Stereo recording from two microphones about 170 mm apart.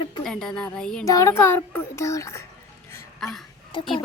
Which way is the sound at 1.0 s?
20° left (ahead or behind).